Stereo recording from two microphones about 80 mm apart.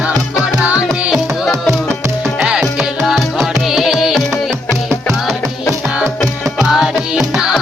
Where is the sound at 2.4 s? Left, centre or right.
Centre.